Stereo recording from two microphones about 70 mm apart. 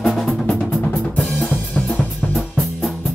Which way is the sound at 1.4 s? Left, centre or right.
Left.